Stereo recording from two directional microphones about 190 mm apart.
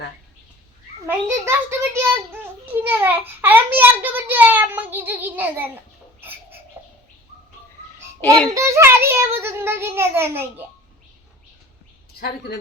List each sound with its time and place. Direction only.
1.0 s a child's voice: 15° right (ahead or behind)
6.1 s chicken: 10° right (ahead or behind)
8.4 s a child's voice: 15° right (ahead or behind)
12.2 s speech: 60° left (ahead or behind)